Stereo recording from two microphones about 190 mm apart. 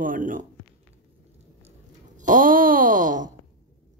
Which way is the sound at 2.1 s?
45° right (ahead or behind).